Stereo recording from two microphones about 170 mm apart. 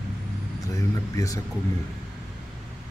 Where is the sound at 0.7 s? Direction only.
20° left (ahead or behind).